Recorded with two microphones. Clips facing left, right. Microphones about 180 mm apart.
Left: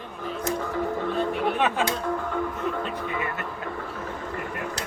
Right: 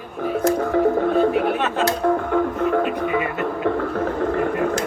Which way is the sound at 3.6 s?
70° right (ahead or behind).